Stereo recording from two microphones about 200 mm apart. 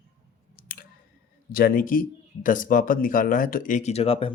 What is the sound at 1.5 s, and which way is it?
Speech, 45° left (ahead or behind).